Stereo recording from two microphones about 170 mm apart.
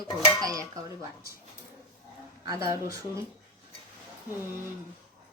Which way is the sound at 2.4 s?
20° right (ahead or behind).